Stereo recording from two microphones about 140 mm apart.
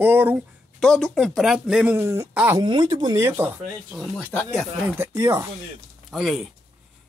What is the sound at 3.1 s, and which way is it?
Speech, 15° right (ahead or behind).